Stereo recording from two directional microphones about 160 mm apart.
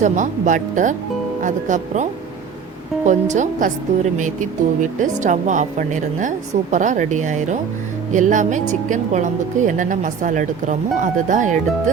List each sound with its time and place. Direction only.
0.0 s a woman's voice: 50° right (ahead or behind)